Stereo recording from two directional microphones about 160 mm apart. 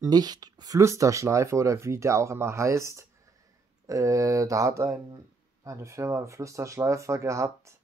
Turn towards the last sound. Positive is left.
turn(degrees=-20)  # may be behind; listen again after turning